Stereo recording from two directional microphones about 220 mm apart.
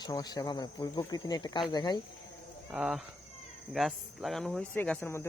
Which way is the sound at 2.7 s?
Centre (ahead or behind).